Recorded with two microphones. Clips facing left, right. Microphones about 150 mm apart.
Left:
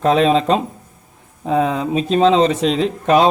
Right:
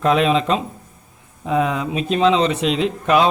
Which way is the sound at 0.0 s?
35° left (ahead or behind).